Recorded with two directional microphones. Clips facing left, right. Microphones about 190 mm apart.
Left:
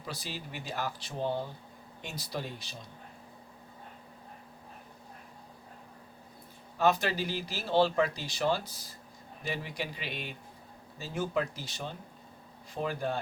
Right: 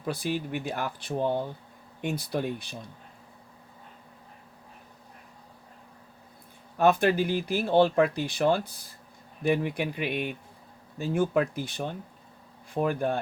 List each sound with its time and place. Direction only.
0.0 s speech: 55° right (ahead or behind)
6.7 s speech: 55° right (ahead or behind)